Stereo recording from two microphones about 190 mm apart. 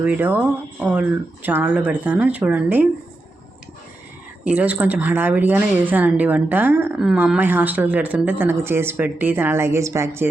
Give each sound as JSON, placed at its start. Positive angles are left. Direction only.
{"t": 0.0, "sound": "a woman's voice", "side_deg": -10}
{"t": 4.4, "sound": "a woman's voice", "side_deg": -10}